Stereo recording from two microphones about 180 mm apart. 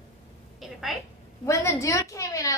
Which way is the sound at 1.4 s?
15° left (ahead or behind).